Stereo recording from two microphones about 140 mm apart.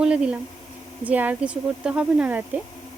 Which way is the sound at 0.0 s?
5° right (ahead or behind).